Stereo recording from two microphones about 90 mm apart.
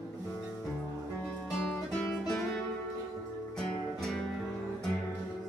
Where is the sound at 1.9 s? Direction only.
10° left (ahead or behind).